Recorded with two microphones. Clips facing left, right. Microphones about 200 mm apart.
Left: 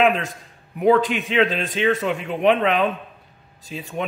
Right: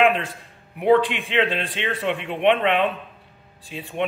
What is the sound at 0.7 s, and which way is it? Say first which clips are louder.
A man's voice: left 1 dB; 40° left (ahead or behind).